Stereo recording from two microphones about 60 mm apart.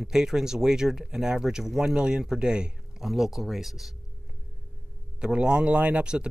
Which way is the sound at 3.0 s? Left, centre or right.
Centre.